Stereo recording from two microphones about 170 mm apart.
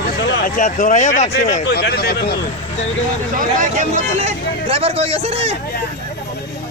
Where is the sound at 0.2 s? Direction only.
80° left.